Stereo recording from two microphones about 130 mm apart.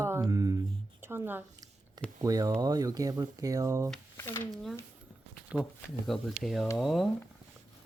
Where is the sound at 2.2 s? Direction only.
30° right (ahead or behind).